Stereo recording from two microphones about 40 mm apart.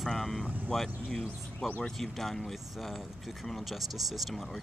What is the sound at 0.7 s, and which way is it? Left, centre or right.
Speech, centre.